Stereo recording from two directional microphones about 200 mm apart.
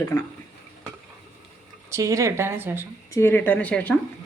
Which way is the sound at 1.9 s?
15° right (ahead or behind).